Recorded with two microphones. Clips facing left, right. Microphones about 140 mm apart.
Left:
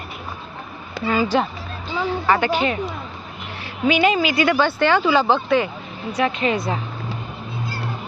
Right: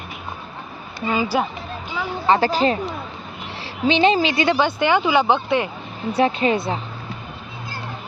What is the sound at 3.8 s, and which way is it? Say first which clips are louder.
Speech: right 1 dB; 30° right (ahead or behind).